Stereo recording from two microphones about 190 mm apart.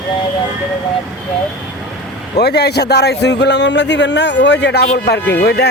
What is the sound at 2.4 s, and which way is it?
A man's voice, 60° left (ahead or behind).